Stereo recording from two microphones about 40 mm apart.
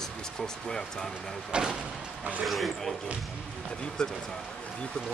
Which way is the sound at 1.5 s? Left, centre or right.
Centre.